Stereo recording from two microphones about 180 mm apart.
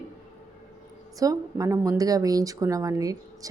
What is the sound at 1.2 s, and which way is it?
Speech, 20° right (ahead or behind).